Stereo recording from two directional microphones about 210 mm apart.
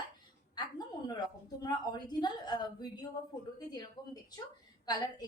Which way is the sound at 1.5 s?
20° left (ahead or behind).